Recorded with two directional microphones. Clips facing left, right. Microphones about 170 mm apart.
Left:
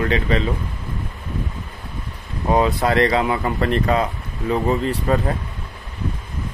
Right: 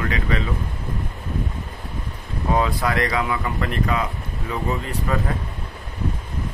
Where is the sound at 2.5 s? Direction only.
25° left (ahead or behind).